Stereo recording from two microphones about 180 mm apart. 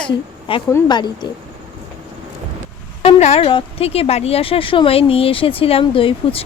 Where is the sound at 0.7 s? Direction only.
25° left (ahead or behind).